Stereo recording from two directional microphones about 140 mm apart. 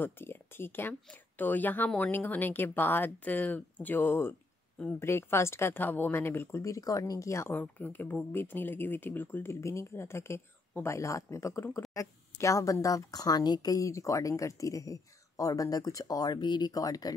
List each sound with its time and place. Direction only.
0.0 s speech: 15° left (ahead or behind)